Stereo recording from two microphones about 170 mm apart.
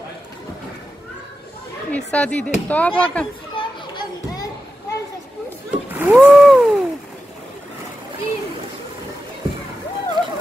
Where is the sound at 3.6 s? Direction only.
25° left (ahead or behind).